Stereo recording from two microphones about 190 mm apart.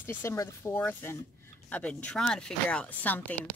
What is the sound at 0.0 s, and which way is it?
Speech, 15° left (ahead or behind).